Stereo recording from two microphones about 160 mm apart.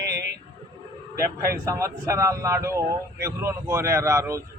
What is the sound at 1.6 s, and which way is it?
A man's voice, 20° right (ahead or behind).